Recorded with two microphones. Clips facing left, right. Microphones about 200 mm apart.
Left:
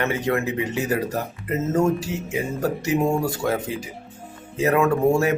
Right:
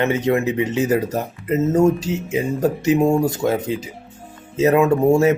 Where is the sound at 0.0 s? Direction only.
20° right (ahead or behind).